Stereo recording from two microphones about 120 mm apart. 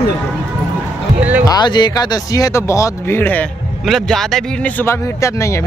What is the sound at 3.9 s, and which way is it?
Speech, 5° left (ahead or behind).